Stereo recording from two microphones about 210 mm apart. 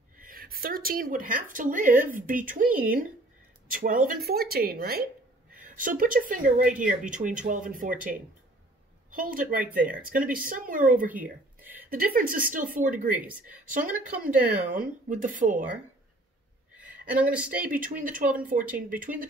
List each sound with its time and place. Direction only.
0.2 s a woman's voice: 45° right (ahead or behind)
11.1 s a sound: 10° right (ahead or behind)
11.9 s speech: 40° right (ahead or behind)
13.1 s speech: 5° right (ahead or behind)
14.2 s speech: 40° right (ahead or behind)
16.7 s a sound: 5° right (ahead or behind)
17.6 s speech: 40° right (ahead or behind)